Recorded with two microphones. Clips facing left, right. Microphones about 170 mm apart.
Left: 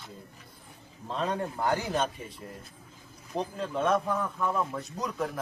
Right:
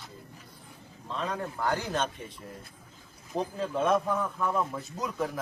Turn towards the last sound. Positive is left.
turn(degrees=0)  # may be behind; listen again after turning